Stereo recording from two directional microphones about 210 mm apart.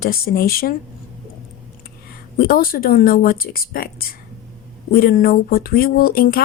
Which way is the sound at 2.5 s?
45° left (ahead or behind).